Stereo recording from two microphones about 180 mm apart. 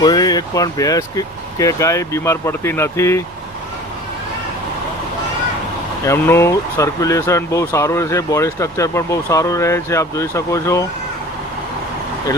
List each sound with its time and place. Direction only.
0.0 s speech: 20° left (ahead or behind)
6.1 s speech: 15° left (ahead or behind)